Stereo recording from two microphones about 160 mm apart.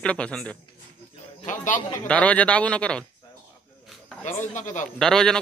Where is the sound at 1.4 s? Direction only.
50° left (ahead or behind).